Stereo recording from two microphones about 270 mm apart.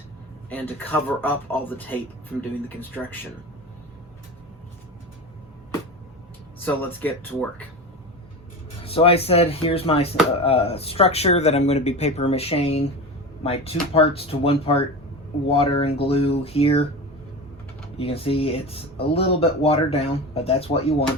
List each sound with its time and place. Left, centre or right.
0.5 s speech: centre
6.7 s speech: centre
8.8 s speech: left
17.9 s speech: left